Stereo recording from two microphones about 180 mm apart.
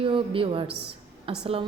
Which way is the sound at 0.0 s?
30° right (ahead or behind).